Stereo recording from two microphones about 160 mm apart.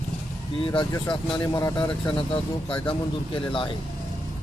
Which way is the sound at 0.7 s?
25° left (ahead or behind).